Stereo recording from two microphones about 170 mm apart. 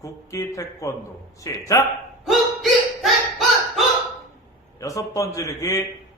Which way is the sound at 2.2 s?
Centre (ahead or behind).